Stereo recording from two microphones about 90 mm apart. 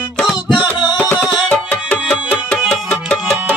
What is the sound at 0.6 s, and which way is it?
Music, 55° left (ahead or behind).